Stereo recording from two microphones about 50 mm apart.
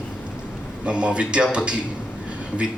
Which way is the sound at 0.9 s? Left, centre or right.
Right.